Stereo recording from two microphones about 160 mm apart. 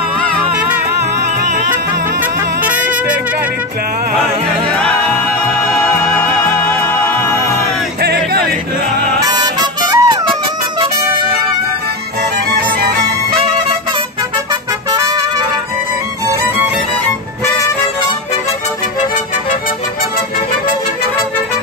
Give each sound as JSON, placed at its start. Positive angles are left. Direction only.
{"t": 2.6, "sound": "music", "side_deg": -10}
{"t": 4.7, "sound": "music", "side_deg": 5}
{"t": 8.0, "sound": "music", "side_deg": -85}
{"t": 9.2, "sound": "harmonica", "side_deg": -25}
{"t": 14.9, "sound": "music", "side_deg": -25}